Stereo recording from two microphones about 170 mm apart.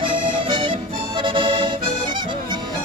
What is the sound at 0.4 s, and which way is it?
Music, 30° right (ahead or behind).